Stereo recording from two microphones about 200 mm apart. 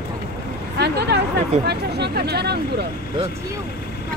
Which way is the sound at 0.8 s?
55° right (ahead or behind).